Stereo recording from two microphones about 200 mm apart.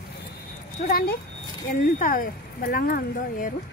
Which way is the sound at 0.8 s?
45° left (ahead or behind).